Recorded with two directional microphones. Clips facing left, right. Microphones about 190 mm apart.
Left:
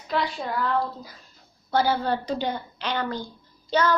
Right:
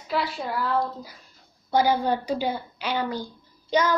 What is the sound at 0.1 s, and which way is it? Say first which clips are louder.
A woman's voice: even; 5° right (ahead or behind).